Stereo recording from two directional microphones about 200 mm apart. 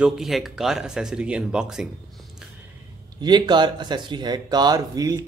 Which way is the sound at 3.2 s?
20° right (ahead or behind).